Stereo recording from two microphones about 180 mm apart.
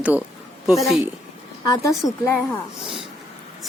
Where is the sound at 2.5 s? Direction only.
Centre (ahead or behind).